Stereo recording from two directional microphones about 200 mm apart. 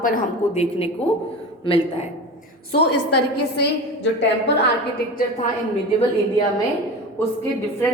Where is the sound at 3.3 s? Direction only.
55° left (ahead or behind).